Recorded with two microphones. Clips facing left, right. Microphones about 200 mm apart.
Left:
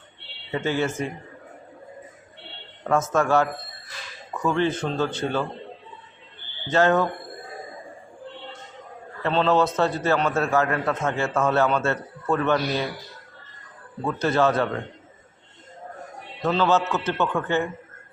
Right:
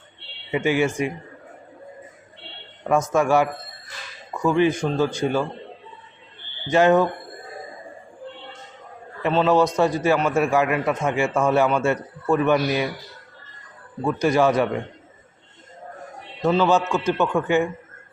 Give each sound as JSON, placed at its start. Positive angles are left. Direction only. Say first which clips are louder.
{"t": 0.5, "sound": "a man's voice", "louder": "right 4 dB", "side_deg": -15}
{"t": 2.9, "sound": "a man's voice", "louder": "right 2 dB", "side_deg": -15}
{"t": 6.7, "sound": "a man's voice", "louder": "right 3 dB", "side_deg": -15}
{"t": 9.2, "sound": "a man's voice", "louder": "right 2 dB", "side_deg": -10}
{"t": 14.0, "sound": "a man's voice", "louder": "right 3 dB", "side_deg": -15}
{"t": 16.4, "sound": "a man's voice", "louder": "right 3 dB", "side_deg": -10}